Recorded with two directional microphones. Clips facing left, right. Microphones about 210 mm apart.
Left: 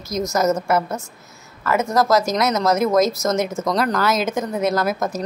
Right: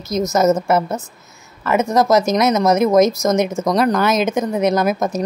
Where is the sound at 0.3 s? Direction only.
20° right (ahead or behind).